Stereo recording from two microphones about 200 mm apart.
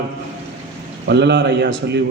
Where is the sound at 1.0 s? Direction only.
60° right (ahead or behind).